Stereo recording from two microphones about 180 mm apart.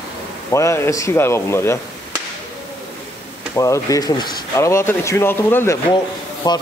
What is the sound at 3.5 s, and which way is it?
Speech, 15° left (ahead or behind).